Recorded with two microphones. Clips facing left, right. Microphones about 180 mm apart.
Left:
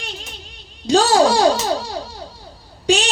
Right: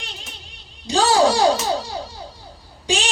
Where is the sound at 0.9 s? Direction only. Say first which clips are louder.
Left 3 dB; 65° left (ahead or behind).